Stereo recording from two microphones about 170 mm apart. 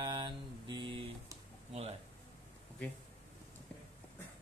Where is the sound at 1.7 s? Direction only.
40° right (ahead or behind).